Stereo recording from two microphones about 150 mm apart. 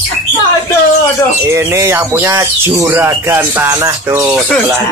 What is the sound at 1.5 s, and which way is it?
Speech, 20° right (ahead or behind).